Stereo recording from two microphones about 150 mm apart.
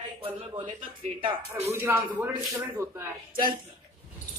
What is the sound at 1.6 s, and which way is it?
Speech, 20° right (ahead or behind).